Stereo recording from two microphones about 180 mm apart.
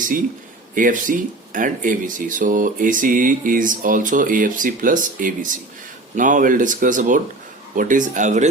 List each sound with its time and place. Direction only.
0.8 s speech: 45° right (ahead or behind)